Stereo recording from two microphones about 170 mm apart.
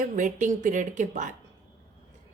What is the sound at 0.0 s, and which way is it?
Speech, 50° right (ahead or behind).